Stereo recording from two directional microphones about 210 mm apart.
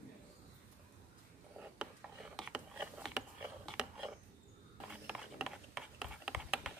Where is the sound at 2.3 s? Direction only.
5° right (ahead or behind).